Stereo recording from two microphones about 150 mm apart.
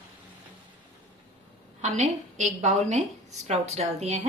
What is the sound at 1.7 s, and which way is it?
A woman's voice, 50° right (ahead or behind).